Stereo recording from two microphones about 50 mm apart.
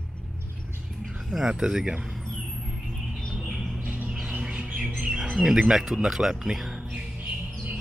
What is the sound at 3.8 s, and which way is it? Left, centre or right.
Bird, right.